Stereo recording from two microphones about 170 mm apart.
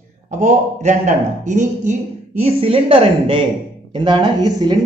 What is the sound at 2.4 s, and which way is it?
Speech, 35° right (ahead or behind).